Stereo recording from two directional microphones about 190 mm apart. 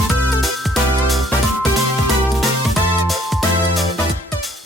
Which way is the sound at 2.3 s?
Centre (ahead or behind).